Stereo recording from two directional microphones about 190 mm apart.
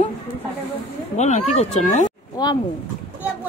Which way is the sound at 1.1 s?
35° left (ahead or behind).